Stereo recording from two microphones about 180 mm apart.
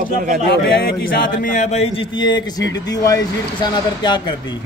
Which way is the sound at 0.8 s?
50° left (ahead or behind).